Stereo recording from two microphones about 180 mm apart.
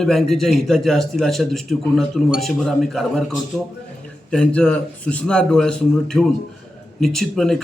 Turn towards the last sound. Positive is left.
turn(degrees=0)  # may be behind; listen again after turning